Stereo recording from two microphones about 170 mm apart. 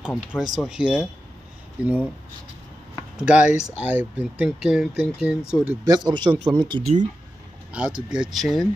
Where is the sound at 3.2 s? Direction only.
5° right (ahead or behind).